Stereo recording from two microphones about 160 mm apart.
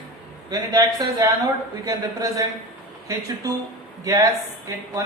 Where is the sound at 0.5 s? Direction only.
25° right (ahead or behind).